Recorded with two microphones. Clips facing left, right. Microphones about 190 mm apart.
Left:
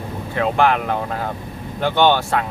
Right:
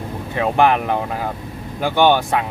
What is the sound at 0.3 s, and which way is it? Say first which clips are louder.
Speech: right 1 dB; 15° right (ahead or behind).